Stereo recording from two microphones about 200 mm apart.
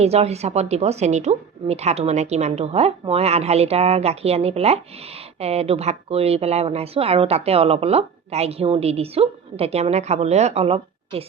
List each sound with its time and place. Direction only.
0.0 s speech: 30° right (ahead or behind)